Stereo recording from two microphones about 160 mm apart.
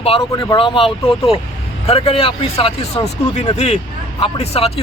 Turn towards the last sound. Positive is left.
turn(degrees=40)  # may be behind; listen again after turning